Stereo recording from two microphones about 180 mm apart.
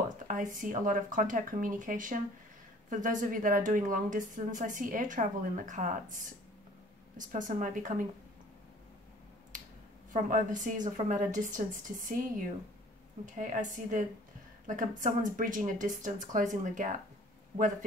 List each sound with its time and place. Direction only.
0.3 s a woman's voice: 50° right (ahead or behind)
10.1 s a woman's voice: 45° right (ahead or behind)